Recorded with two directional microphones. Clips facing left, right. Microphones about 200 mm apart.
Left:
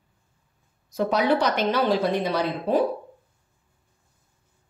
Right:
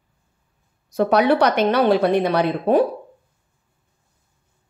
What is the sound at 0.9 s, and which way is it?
Speech, 65° right (ahead or behind).